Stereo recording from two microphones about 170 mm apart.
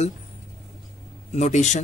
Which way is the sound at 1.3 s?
45° left (ahead or behind).